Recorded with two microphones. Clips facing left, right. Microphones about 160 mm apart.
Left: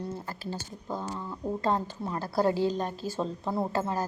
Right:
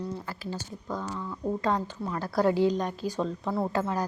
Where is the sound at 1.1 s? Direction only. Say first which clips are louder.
Right 4 dB; 20° left (ahead or behind).